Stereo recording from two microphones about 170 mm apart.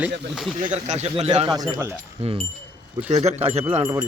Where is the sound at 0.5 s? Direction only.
45° right (ahead or behind).